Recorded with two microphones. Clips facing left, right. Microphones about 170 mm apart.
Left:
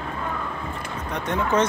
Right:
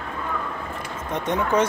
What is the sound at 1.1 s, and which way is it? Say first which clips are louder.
Speech: right 1 dB; 15° right (ahead or behind).